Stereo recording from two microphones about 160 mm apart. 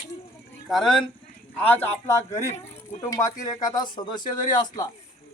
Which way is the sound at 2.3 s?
20° left (ahead or behind).